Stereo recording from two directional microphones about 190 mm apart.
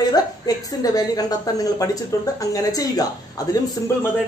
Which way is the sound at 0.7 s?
20° left (ahead or behind).